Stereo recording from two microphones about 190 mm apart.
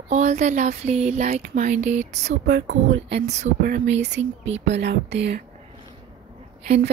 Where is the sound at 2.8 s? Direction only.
70° right (ahead or behind).